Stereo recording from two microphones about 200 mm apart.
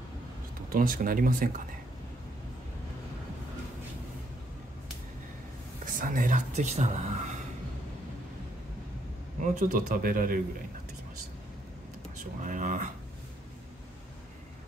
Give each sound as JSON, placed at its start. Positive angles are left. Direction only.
{"t": 0.7, "sound": "speech", "side_deg": -45}
{"t": 5.9, "sound": "speech", "side_deg": -40}
{"t": 9.4, "sound": "speech", "side_deg": -40}
{"t": 12.4, "sound": "speech", "side_deg": -40}